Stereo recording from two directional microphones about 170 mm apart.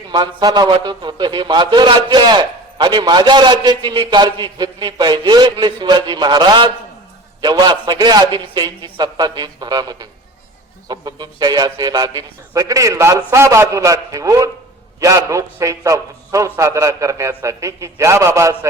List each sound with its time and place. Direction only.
0.1 s a man's voice: 25° right (ahead or behind)